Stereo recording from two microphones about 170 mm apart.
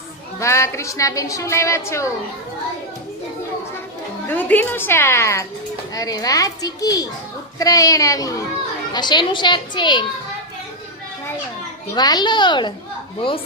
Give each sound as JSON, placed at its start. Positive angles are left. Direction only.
{"t": 0.3, "sound": "a woman's voice", "side_deg": 15}
{"t": 4.3, "sound": "a woman's voice", "side_deg": 10}
{"t": 11.9, "sound": "a child's voice", "side_deg": 25}